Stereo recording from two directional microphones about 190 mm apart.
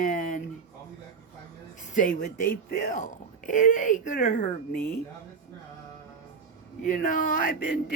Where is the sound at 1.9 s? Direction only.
45° left (ahead or behind).